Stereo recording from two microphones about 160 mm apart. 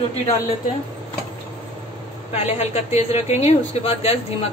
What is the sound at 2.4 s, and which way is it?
Speech, 40° left (ahead or behind).